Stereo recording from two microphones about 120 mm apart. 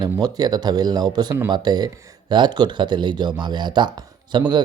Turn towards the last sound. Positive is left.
turn(degrees=-40)  # may be behind; listen again after turning